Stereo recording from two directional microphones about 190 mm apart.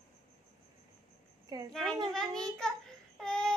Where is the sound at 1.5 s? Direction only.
20° right (ahead or behind).